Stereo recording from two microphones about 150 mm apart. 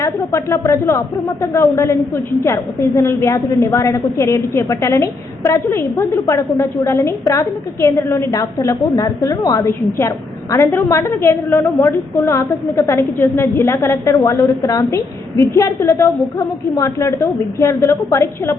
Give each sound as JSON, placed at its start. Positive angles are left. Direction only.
{"t": 0.0, "sound": "a woman's voice", "side_deg": 20}